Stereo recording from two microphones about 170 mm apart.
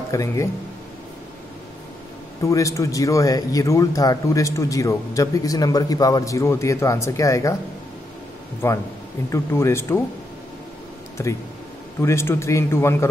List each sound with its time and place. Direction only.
0.1 s a man's voice: 20° left (ahead or behind)
2.4 s speech: 20° left (ahead or behind)
8.6 s a man's voice: 15° left (ahead or behind)
11.2 s a man's voice: 15° left (ahead or behind)